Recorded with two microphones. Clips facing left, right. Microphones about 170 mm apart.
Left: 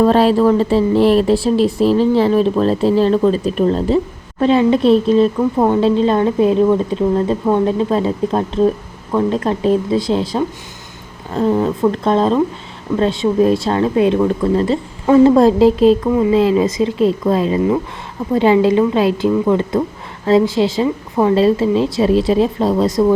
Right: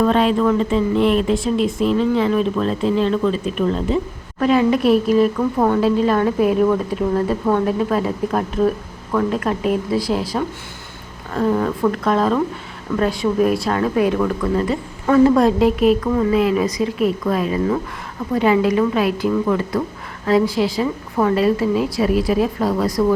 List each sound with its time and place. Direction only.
0.0 s a woman's voice: 35° left (ahead or behind)
16.0 s speech: 15° left (ahead or behind)
16.3 s a woman's voice: 25° left (ahead or behind)